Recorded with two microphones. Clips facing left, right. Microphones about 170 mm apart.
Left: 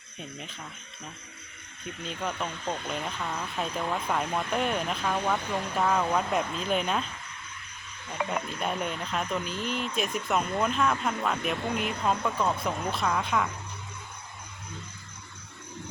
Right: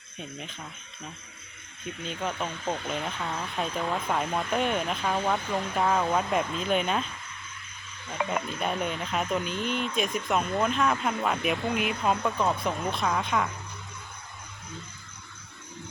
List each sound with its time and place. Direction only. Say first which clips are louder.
0.2 s speech: right 1 dB; centre (ahead or behind)
2.0 s speech: right 1 dB; 5° right (ahead or behind)
8.6 s speech: right 1 dB; centre (ahead or behind)